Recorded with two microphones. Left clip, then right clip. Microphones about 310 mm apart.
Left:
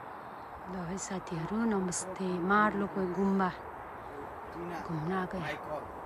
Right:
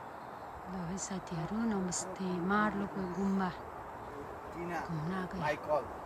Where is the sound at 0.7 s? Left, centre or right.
Centre.